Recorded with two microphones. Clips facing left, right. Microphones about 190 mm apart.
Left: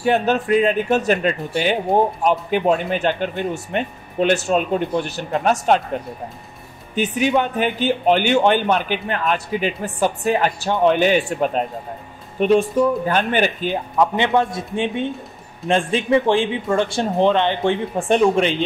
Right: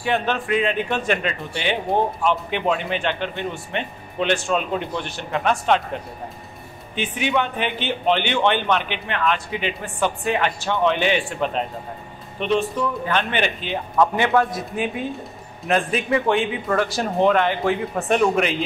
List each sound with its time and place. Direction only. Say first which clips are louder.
0.0 s speech: left 5 dB; 40° left (ahead or behind)
7.0 s speech: left 4 dB; 40° left (ahead or behind)
13.9 s speech: even; 20° left (ahead or behind)